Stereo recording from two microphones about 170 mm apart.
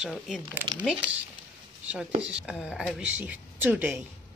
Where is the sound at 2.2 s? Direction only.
5° right (ahead or behind).